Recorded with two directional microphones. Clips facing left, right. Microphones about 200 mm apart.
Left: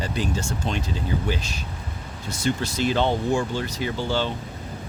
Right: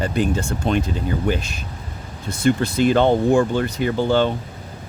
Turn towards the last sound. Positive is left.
turn(degrees=-55)  # may be behind; listen again after turning